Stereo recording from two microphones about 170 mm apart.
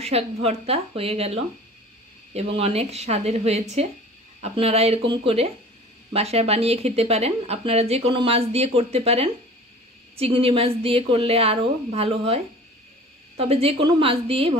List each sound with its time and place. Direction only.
0.0 s speech: 35° right (ahead or behind)
13.4 s speech: 35° right (ahead or behind)